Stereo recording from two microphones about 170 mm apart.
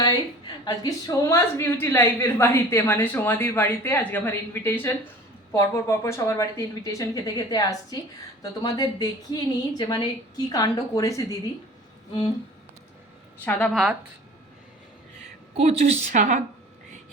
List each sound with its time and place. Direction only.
0.0 s a woman's voice: 25° left (ahead or behind)
13.4 s a woman's voice: 5° left (ahead or behind)
15.5 s a woman's voice: 40° right (ahead or behind)